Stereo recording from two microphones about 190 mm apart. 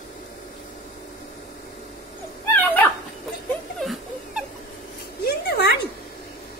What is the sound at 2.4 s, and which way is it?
Dog, 10° left (ahead or behind).